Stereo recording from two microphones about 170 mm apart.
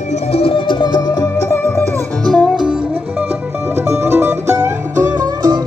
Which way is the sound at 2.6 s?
5° right (ahead or behind).